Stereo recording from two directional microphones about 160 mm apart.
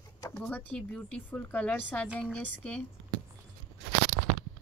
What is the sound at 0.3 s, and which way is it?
A woman's voice, 5° left (ahead or behind).